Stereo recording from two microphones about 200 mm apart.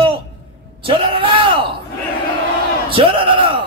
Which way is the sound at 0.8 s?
25° right (ahead or behind).